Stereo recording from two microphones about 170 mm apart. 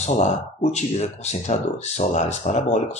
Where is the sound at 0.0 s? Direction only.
40° left (ahead or behind).